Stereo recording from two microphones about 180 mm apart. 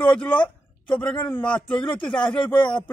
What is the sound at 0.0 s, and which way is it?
Speech, 5° left (ahead or behind).